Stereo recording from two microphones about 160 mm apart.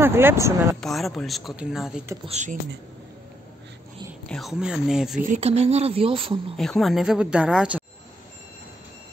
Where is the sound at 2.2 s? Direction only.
45° right (ahead or behind).